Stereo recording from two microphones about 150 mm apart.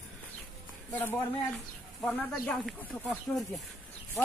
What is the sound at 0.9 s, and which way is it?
Speech, 15° left (ahead or behind).